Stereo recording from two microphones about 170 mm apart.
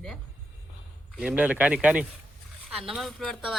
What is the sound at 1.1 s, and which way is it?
Speech, 10° right (ahead or behind).